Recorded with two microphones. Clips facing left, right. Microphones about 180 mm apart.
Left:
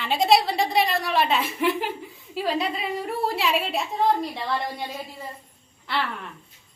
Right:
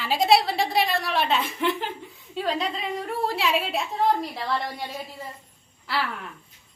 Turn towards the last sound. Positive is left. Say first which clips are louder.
# even
turn(degrees=-5)  # may be behind; listen again after turning